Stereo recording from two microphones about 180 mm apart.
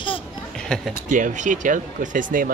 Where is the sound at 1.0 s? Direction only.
45° right (ahead or behind).